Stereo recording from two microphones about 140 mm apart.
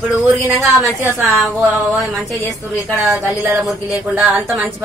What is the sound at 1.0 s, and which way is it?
Speech, 20° right (ahead or behind).